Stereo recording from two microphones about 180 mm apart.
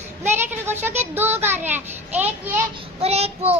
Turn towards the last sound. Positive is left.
turn(degrees=-35)  # may be behind; listen again after turning